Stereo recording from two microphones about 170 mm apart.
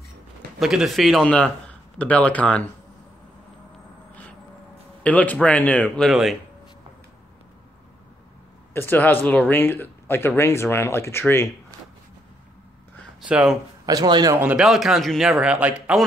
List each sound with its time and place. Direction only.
0.6 s speech: centre (ahead or behind)
4.1 s vehicle: 10° left (ahead or behind)
5.0 s speech: 10° left (ahead or behind)
8.7 s speech: 10° left (ahead or behind)
13.2 s speech: 5° right (ahead or behind)
13.8 s a man's voice: 25° right (ahead or behind)
14.4 s a man's voice: 5° right (ahead or behind)